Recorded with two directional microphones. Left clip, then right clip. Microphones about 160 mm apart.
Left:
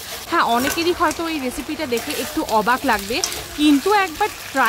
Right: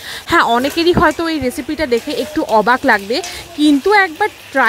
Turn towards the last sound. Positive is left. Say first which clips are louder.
# right 5 dB
turn(degrees=-35)  # may be behind; listen again after turning